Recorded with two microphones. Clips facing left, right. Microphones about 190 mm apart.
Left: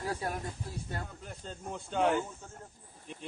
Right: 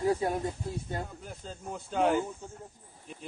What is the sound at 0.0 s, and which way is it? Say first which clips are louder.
Speech: right 8 dB; 20° right (ahead or behind).